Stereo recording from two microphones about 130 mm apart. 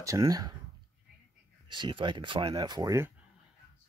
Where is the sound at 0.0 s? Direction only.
25° right (ahead or behind).